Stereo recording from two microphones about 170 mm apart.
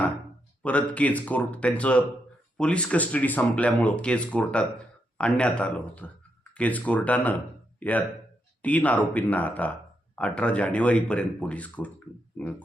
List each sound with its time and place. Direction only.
0.6 s speech: 10° left (ahead or behind)